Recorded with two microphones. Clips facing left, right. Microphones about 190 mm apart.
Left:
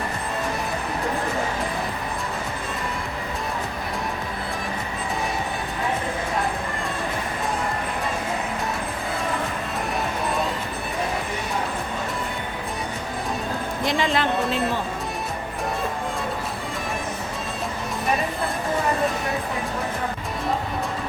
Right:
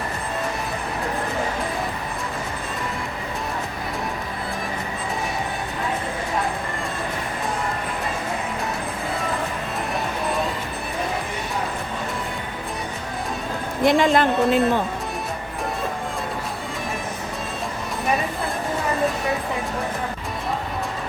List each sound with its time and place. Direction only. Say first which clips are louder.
13.8 s a woman's voice: right 6 dB; 55° right (ahead or behind)